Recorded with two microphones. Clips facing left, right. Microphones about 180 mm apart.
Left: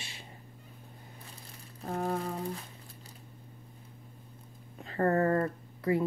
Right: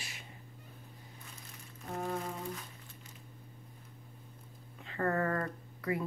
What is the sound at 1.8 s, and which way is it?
Music, 35° left (ahead or behind).